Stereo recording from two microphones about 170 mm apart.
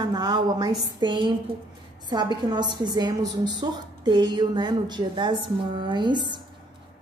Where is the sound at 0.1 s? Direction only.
25° right (ahead or behind).